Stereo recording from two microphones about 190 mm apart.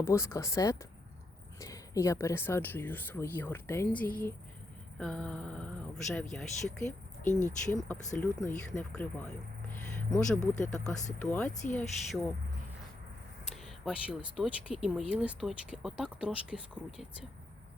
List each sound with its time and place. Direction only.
0.0 s speech: 15° left (ahead or behind)
7.3 s speech: 40° left (ahead or behind)
7.6 s speech: 5° left (ahead or behind)
13.7 s speech: 5° right (ahead or behind)